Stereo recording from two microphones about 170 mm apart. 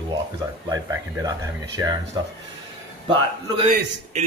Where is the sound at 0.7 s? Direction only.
20° right (ahead or behind).